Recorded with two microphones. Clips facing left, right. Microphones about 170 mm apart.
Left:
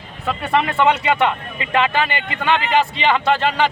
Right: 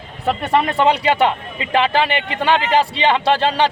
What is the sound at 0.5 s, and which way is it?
A man's voice, 35° right (ahead or behind).